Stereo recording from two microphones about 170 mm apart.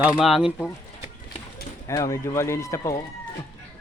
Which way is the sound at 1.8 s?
20° left (ahead or behind).